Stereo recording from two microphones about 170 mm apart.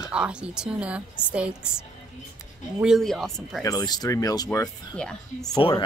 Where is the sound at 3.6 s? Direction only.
20° left (ahead or behind).